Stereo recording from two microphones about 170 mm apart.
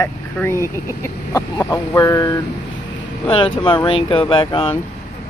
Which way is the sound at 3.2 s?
30° left (ahead or behind).